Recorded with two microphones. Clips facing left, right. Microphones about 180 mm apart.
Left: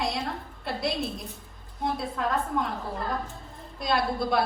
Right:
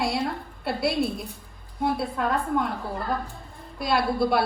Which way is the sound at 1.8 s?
60° right (ahead or behind).